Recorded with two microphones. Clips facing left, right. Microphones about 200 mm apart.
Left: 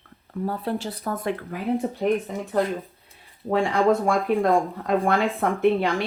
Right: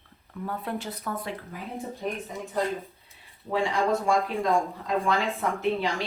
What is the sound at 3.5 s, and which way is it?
Speech, 55° left (ahead or behind).